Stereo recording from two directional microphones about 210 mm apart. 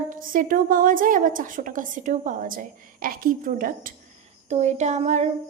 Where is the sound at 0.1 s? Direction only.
40° right (ahead or behind).